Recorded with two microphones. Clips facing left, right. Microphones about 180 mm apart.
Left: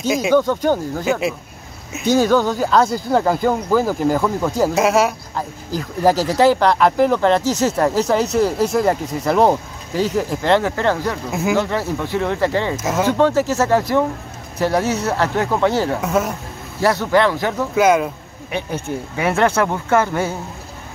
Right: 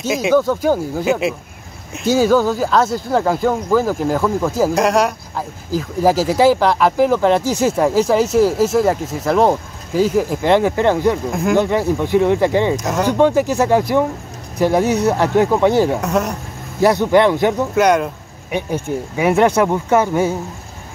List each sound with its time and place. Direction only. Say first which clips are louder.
0.0 s speech: right 1 dB; centre (ahead or behind)
12.7 s speech: right 1 dB; centre (ahead or behind)
13.2 s speech: right 4 dB; 15° right (ahead or behind)
16.0 s speech: right 1 dB; centre (ahead or behind)
16.8 s speech: right 3 dB; 15° right (ahead or behind)
17.7 s speech: left 2 dB; centre (ahead or behind)
18.5 s speech: right 3 dB; 15° right (ahead or behind)